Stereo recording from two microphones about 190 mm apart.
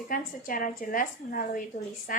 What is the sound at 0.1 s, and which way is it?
A woman's voice, 45° left (ahead or behind).